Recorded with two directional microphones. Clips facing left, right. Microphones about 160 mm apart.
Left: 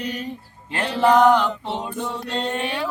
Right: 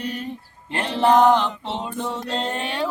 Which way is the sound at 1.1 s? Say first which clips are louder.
Even; 30° right (ahead or behind).